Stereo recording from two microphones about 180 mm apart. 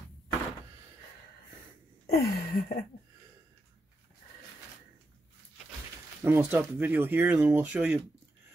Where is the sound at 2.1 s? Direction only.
60° left (ahead or behind).